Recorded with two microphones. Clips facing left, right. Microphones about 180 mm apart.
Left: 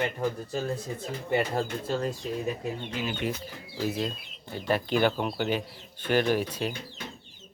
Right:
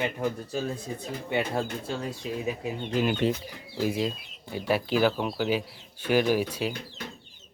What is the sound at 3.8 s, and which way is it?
Speech, 10° right (ahead or behind).